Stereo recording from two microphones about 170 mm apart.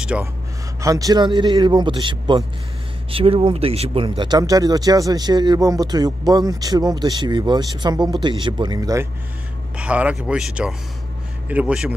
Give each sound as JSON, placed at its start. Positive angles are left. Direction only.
{"t": 0.1, "sound": "a man's voice", "side_deg": -5}
{"t": 0.7, "sound": "speech", "side_deg": -20}
{"t": 9.8, "sound": "a man's voice", "side_deg": -10}